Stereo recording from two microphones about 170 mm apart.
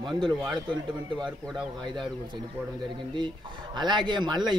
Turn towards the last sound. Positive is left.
turn(degrees=-25)  # may be behind; listen again after turning